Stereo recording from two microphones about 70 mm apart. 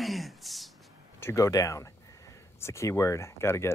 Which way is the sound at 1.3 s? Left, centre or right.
Left.